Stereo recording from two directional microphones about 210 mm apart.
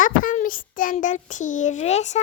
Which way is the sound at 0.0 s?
40° left (ahead or behind).